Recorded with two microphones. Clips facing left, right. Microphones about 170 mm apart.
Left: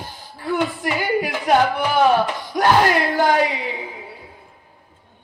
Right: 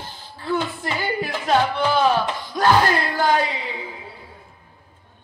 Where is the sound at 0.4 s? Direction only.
15° left (ahead or behind).